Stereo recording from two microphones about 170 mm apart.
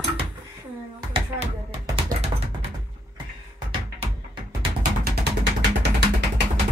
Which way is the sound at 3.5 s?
25° right (ahead or behind).